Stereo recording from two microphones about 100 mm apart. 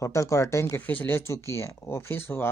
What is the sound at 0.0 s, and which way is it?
Speech, 30° left (ahead or behind).